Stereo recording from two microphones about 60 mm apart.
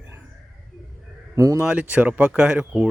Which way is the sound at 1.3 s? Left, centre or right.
Right.